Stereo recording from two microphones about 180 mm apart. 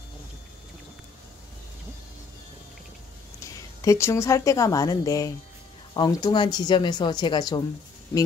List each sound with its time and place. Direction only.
3.8 s a woman's voice: 15° left (ahead or behind)